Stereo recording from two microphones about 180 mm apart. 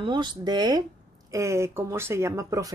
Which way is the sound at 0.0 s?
25° right (ahead or behind).